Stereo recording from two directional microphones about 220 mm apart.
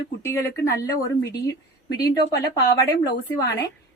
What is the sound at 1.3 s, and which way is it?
A woman's voice, 50° left (ahead or behind).